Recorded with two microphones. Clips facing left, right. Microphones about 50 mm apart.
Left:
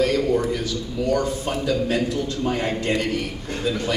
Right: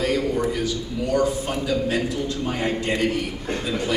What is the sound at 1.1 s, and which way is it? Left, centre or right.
A man's voice, centre.